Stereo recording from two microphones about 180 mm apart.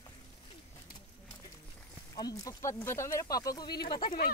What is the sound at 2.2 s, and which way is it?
Speech, 20° left (ahead or behind).